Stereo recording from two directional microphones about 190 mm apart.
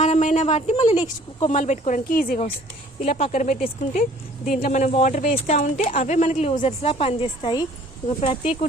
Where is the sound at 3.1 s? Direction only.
35° left (ahead or behind).